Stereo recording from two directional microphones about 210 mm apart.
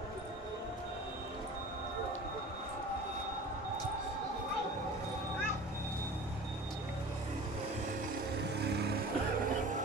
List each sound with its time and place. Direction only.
8.5 s vehicle: 50° right (ahead or behind)